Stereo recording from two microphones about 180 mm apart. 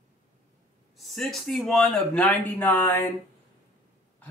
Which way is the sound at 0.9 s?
Centre (ahead or behind).